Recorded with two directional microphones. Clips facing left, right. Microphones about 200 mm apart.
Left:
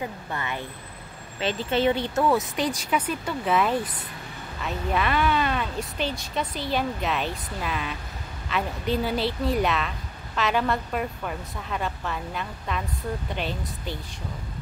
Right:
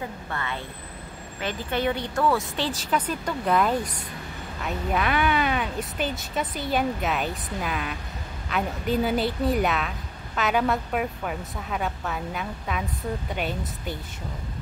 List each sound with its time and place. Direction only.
0.3 s a woman's voice: 15° left (ahead or behind); by 13.6 s 5° right (ahead or behind)